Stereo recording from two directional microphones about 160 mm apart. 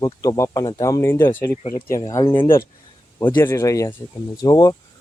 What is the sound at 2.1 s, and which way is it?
Speech, 20° left (ahead or behind).